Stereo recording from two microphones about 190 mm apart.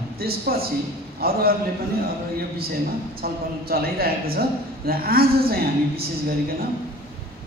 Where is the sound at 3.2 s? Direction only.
50° right (ahead or behind).